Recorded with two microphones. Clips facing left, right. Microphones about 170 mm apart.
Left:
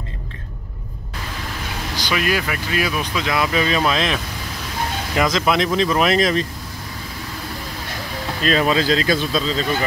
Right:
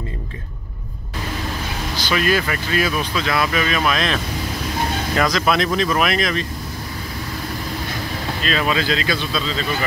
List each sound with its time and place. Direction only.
2.0 s speech: 10° left (ahead or behind); by 6.4 s 35° left (ahead or behind)
8.5 s speech: 35° left (ahead or behind)